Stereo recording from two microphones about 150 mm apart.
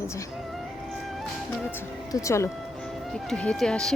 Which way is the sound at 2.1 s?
20° left (ahead or behind).